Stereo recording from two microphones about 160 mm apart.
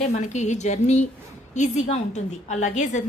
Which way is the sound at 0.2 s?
45° left (ahead or behind).